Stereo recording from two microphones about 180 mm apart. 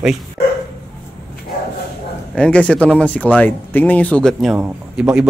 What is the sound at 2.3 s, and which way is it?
Speech, 5° left (ahead or behind).